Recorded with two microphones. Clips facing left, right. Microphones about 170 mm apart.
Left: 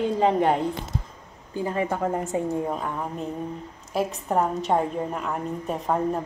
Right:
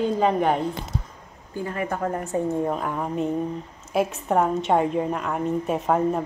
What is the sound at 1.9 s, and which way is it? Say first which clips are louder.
Speech: even; 20° left (ahead or behind).